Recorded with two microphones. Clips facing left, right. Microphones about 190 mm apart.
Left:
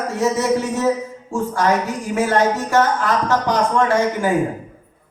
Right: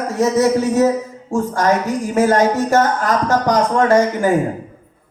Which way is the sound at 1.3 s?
40° right (ahead or behind).